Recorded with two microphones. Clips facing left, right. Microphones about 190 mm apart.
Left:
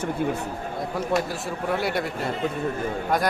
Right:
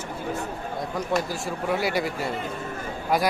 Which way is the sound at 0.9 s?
Centre (ahead or behind).